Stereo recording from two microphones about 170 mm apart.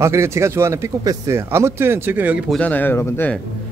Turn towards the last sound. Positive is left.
turn(degrees=10)  # may be behind; listen again after turning